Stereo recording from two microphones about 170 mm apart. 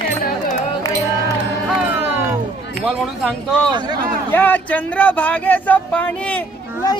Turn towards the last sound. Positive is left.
turn(degrees=10)  # may be behind; listen again after turning